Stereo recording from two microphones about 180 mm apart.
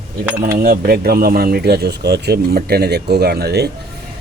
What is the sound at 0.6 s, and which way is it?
Speech, 60° right (ahead or behind).